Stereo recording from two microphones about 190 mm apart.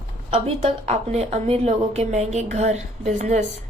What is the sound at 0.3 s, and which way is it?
A woman's voice, 30° right (ahead or behind).